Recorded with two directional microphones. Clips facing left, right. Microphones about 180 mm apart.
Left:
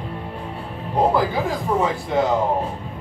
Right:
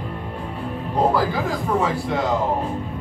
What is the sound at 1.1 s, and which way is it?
Speech, 20° left (ahead or behind).